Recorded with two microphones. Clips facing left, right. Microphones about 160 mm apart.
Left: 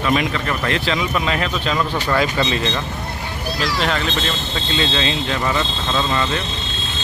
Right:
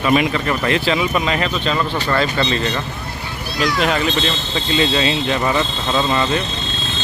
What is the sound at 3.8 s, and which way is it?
Speech, 10° right (ahead or behind).